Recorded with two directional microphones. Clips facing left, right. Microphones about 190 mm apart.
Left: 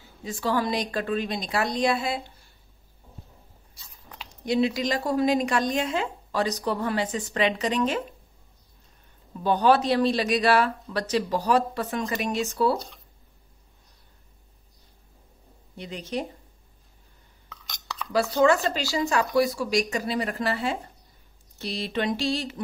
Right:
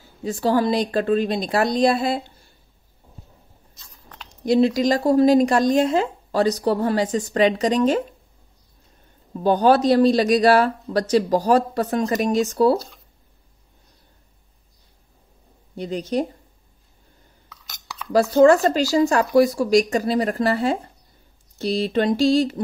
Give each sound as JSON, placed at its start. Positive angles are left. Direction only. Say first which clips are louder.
{"t": 0.2, "sound": "speech", "louder": "right 7 dB", "side_deg": -40}
{"t": 3.7, "sound": "a sound", "louder": "even", "side_deg": 5}
{"t": 4.5, "sound": "speech", "louder": "right 7 dB", "side_deg": -40}
{"t": 9.4, "sound": "speech", "louder": "right 5 dB", "side_deg": -40}
{"t": 12.7, "sound": "speech", "louder": "right 7 dB", "side_deg": 0}
{"t": 15.7, "sound": "speech", "louder": "right 8 dB", "side_deg": -40}
{"t": 18.1, "sound": "speech", "louder": "right 7 dB", "side_deg": -45}